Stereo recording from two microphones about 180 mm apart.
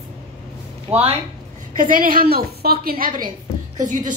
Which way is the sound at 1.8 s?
50° right (ahead or behind).